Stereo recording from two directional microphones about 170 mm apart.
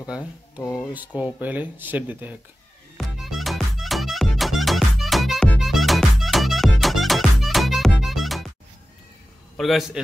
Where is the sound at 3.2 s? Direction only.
Centre (ahead or behind).